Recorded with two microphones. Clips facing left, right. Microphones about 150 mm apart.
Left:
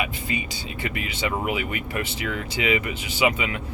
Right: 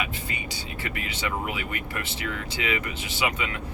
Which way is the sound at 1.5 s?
15° left (ahead or behind).